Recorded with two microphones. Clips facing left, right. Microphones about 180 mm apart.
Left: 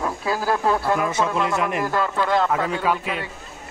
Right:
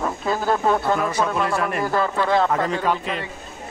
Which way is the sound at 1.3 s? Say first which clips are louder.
Even; 20° left (ahead or behind).